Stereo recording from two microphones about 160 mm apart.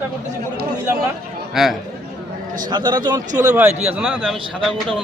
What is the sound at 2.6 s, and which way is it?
Speech, 30° right (ahead or behind).